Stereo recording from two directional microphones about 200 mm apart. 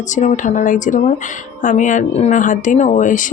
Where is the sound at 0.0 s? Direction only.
35° left (ahead or behind).